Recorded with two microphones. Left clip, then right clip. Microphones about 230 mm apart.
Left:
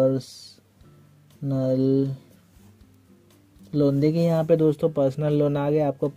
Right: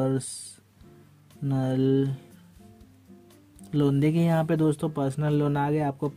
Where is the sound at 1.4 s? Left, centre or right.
Right.